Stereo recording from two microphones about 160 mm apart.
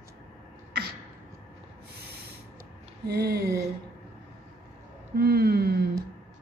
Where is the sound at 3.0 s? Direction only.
90° right.